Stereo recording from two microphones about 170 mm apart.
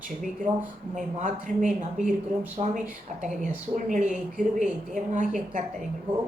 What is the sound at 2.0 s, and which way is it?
Speech, 5° right (ahead or behind).